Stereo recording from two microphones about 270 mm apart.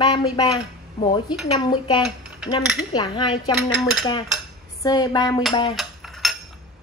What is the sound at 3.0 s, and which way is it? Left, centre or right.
Speech, centre.